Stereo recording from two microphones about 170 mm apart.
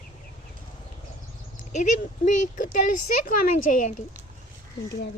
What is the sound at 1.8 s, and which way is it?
Speech, 50° left (ahead or behind).